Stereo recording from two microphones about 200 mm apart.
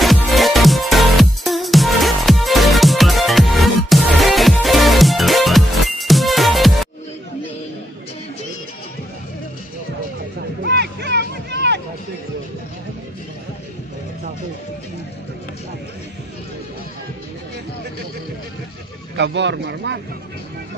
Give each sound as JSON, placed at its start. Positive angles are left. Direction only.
{"t": 0.0, "sound": "music", "side_deg": 0}
{"t": 10.6, "sound": "a sound", "side_deg": -55}
{"t": 19.1, "sound": "speech", "side_deg": -60}